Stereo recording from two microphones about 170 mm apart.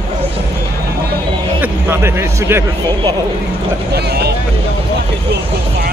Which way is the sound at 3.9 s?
70° right (ahead or behind).